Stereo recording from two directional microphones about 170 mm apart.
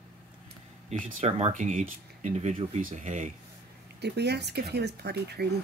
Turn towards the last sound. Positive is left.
turn(degrees=-70)  # may be behind; listen again after turning